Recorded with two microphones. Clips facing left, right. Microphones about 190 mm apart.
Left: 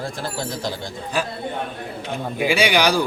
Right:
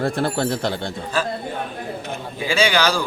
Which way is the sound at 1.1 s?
15° left (ahead or behind).